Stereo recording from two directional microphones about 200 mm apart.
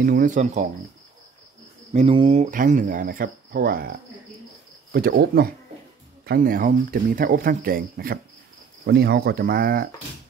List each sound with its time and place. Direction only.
0.0 s speech: 40° right (ahead or behind)
2.0 s speech: 25° right (ahead or behind)
2.5 s speech: 40° right (ahead or behind)